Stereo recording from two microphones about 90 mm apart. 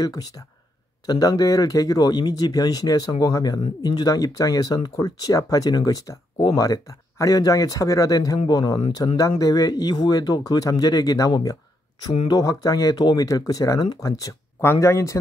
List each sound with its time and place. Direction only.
0.0 s speech: 45° left (ahead or behind)